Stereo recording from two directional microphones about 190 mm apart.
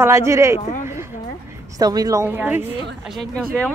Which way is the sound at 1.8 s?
20° right (ahead or behind).